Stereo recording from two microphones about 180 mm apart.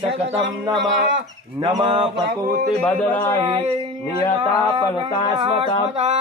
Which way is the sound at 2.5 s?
45° right (ahead or behind).